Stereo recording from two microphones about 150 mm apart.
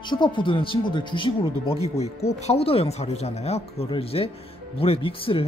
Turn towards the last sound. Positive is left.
turn(degrees=40)  # may be behind; listen again after turning